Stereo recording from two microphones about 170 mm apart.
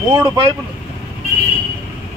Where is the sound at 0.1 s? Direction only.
25° right (ahead or behind).